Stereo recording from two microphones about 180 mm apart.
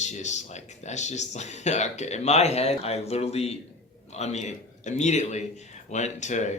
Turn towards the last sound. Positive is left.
turn(degrees=40)  # may be behind; listen again after turning